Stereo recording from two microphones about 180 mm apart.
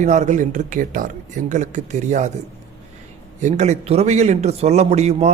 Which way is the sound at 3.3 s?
40° right (ahead or behind).